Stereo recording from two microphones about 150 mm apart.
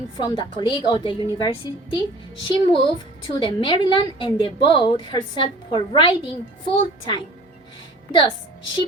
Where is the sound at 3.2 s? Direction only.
30° left (ahead or behind).